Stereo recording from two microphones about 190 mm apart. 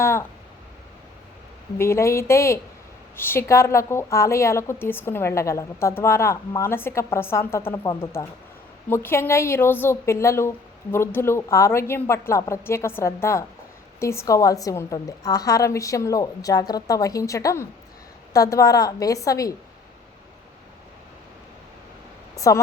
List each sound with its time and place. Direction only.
0.0 s speech: 15° left (ahead or behind)
1.8 s a woman's voice: 15° left (ahead or behind)
22.4 s a woman's voice: 15° left (ahead or behind)